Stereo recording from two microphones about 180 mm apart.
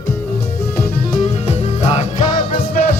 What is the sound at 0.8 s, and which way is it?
Music, 50° left (ahead or behind).